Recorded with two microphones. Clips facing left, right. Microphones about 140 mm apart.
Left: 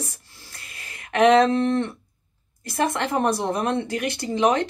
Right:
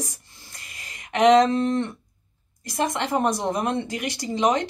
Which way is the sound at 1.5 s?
60° left (ahead or behind).